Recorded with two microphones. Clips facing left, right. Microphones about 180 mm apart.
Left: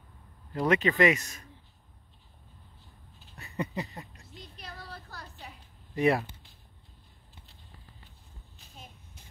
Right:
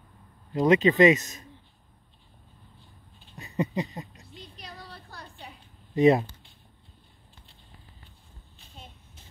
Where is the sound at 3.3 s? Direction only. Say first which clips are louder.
Right 5 dB; 20° right (ahead or behind).